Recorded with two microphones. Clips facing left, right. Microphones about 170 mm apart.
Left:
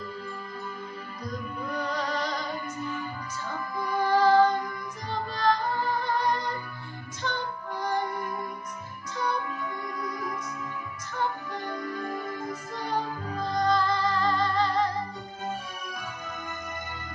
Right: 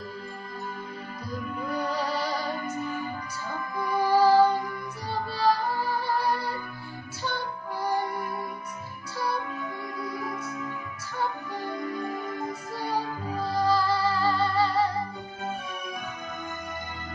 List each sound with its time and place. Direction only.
1.7 s music: 10° right (ahead or behind)
4.1 s child singing: 10° right (ahead or behind)
5.1 s music: 10° right (ahead or behind)
11.8 s music: 10° right (ahead or behind)